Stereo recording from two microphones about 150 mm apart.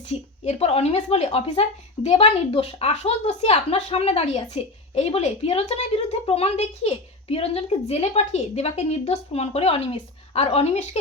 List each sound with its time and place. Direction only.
0.1 s a woman's voice: 45° left (ahead or behind)